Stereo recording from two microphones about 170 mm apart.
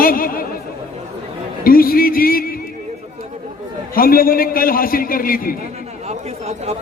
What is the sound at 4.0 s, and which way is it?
A man's voice, 60° left (ahead or behind).